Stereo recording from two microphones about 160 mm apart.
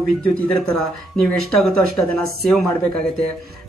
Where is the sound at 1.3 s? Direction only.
5° left (ahead or behind).